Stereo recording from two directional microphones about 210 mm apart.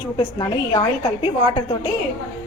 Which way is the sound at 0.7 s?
25° left (ahead or behind).